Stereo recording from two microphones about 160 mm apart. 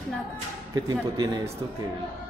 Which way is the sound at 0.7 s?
25° right (ahead or behind).